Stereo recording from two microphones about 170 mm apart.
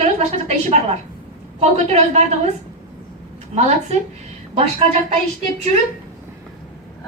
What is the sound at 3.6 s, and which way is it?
Speech, 40° right (ahead or behind).